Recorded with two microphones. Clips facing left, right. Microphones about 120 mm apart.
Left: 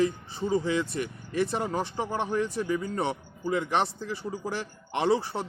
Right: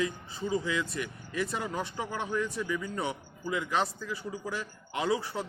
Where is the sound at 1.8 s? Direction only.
25° left (ahead or behind).